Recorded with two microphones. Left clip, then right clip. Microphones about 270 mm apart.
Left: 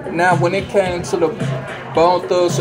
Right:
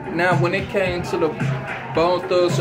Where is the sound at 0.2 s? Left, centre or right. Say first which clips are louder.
Left 4 dB; centre.